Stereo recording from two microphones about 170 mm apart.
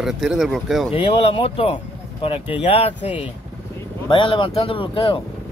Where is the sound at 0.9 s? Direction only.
35° left (ahead or behind).